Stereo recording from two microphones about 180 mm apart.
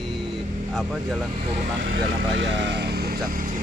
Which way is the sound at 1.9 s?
80° right.